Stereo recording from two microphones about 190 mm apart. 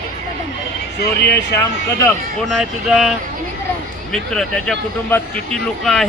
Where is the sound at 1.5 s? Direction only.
15° left (ahead or behind).